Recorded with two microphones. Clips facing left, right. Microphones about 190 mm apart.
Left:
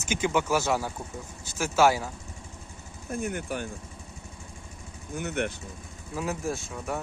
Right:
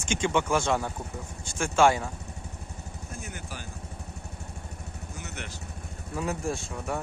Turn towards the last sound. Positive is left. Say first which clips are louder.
# even
turn(degrees=0)  # may be behind; listen again after turning